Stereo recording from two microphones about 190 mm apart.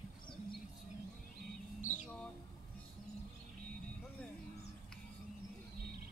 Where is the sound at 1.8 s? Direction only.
40° left (ahead or behind).